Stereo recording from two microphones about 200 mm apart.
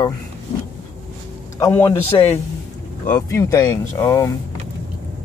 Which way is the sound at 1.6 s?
15° left (ahead or behind).